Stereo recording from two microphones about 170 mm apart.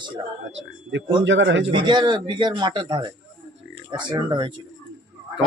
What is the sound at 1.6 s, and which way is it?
Speech, 30° right (ahead or behind).